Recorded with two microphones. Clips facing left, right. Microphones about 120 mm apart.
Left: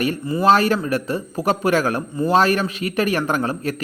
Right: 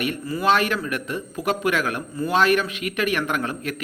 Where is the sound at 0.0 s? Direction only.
30° left (ahead or behind).